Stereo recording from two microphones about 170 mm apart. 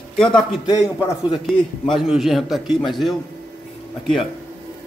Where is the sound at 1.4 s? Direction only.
Centre (ahead or behind).